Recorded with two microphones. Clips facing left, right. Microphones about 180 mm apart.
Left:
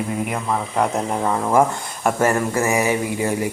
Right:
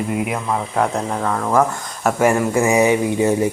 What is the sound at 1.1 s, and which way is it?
Speech, 15° left (ahead or behind).